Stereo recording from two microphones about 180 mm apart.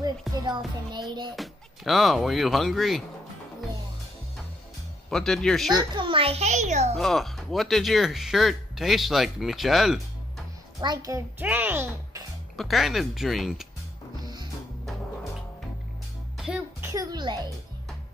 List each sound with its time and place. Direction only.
0.3 s speech: centre (ahead or behind)
0.9 s speech: 25° right (ahead or behind)
1.3 s speech: centre (ahead or behind)
5.1 s speech: centre (ahead or behind)
5.8 s a child's voice: 30° right (ahead or behind)
7.0 s speech: centre (ahead or behind)
10.8 s a child's voice: 20° right (ahead or behind)
12.5 s speech: centre (ahead or behind)
14.2 s music: 25° right (ahead or behind)
16.3 s music: 5° right (ahead or behind)
16.8 s a child's voice: 20° right (ahead or behind)